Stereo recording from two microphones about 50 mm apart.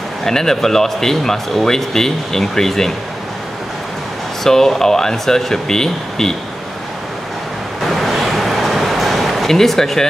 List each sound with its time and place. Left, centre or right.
0.2 s speech: centre
4.4 s speech: centre
7.8 s a sound: centre